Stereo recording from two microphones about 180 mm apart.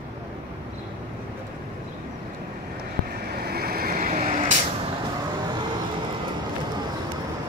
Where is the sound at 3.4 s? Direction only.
60° right (ahead or behind); by 4.5 s 45° right (ahead or behind).